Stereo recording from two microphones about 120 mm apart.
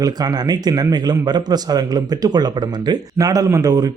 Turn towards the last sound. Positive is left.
turn(degrees=-30)  # may be behind; listen again after turning